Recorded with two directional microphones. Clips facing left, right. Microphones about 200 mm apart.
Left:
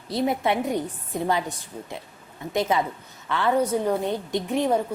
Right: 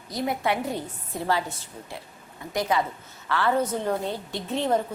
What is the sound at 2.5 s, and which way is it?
A woman's voice, 20° left (ahead or behind).